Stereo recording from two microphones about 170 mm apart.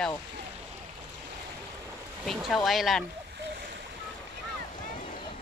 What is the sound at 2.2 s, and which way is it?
Speech, centre (ahead or behind).